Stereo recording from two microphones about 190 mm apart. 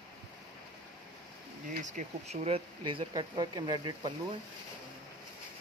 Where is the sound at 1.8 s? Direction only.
35° right (ahead or behind).